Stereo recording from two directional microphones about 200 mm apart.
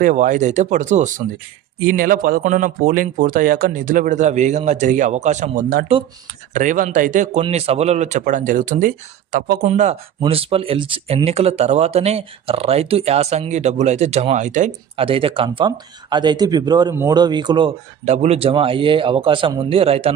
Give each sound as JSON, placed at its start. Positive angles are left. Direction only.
{"t": 0.0, "sound": "speech", "side_deg": -40}
{"t": 1.8, "sound": "speech", "side_deg": -45}
{"t": 18.0, "sound": "speech", "side_deg": -35}